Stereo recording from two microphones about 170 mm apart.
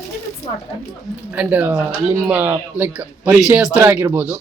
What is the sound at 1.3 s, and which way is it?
Speech, 10° right (ahead or behind).